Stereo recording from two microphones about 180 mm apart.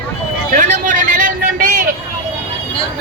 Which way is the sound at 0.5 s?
45° right (ahead or behind).